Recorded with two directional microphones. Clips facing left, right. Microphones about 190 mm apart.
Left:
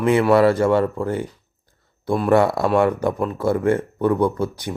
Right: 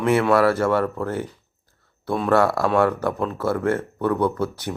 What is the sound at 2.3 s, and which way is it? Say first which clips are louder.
Speech: left 2 dB; 15° left (ahead or behind).